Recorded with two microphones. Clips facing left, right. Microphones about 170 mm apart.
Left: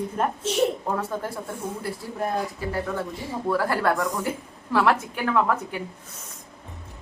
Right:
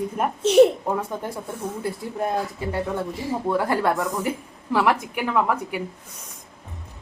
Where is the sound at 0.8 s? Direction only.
10° right (ahead or behind).